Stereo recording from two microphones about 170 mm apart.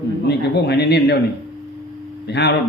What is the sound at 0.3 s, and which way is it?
Speech, 75° left (ahead or behind).